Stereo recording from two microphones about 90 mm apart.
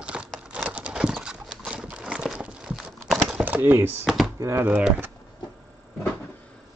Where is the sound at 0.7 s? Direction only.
15° right (ahead or behind).